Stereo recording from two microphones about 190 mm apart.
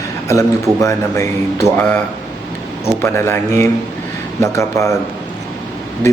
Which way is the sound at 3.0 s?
15° left (ahead or behind).